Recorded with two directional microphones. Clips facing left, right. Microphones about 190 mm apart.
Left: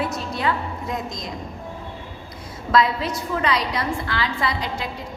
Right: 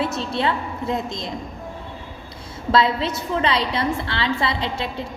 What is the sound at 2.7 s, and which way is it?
A woman's voice, 25° right (ahead or behind).